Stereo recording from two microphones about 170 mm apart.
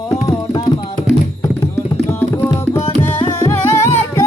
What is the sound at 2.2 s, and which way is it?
Tabla, 15° left (ahead or behind).